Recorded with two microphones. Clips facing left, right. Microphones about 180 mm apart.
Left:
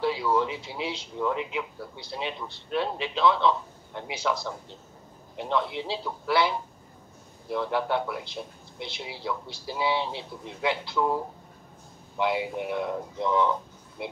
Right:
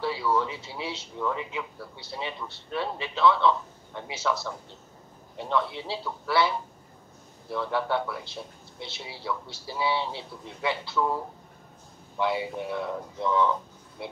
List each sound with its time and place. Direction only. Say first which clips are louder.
0.0 s speech: left 2 dB; 15° left (ahead or behind)